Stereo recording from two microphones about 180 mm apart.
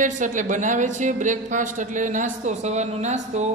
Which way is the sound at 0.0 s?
45° right (ahead or behind).